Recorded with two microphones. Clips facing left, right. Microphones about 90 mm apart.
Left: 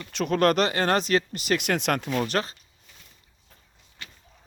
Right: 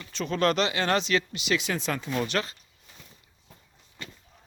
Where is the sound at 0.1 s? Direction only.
60° left (ahead or behind).